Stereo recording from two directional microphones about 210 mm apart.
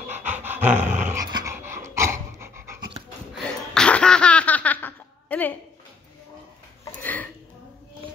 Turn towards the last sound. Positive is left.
turn(degrees=10)  # may be behind; listen again after turning